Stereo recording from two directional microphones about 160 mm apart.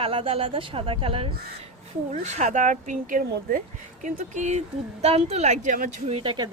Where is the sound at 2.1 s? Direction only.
45° right (ahead or behind).